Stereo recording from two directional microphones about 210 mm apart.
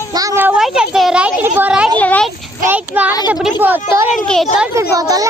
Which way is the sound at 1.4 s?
10° right (ahead or behind).